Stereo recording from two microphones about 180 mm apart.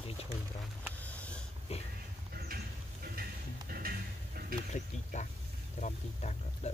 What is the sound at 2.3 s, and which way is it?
Horse, 55° right (ahead or behind).